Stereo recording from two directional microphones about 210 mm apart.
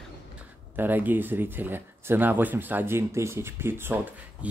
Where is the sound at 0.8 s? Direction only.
10° right (ahead or behind).